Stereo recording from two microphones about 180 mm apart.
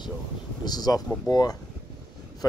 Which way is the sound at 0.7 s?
20° left (ahead or behind).